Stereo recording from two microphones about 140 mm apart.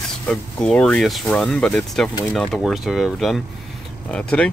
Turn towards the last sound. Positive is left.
turn(degrees=5)  # may be behind; listen again after turning